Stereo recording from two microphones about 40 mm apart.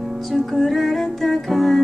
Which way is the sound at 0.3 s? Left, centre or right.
Centre.